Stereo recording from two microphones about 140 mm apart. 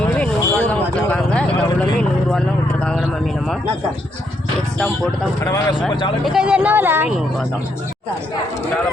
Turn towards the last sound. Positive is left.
turn(degrees=-15)  # may be behind; listen again after turning